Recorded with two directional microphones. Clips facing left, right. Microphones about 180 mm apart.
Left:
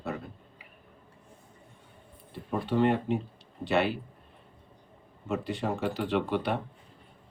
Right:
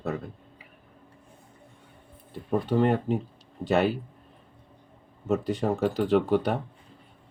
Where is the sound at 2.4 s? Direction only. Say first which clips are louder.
Right 2 dB; 40° right (ahead or behind).